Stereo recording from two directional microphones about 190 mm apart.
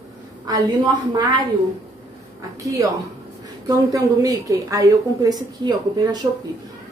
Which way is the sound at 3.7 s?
20° right (ahead or behind).